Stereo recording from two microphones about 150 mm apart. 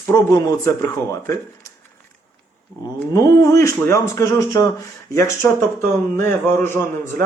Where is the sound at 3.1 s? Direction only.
20° left (ahead or behind).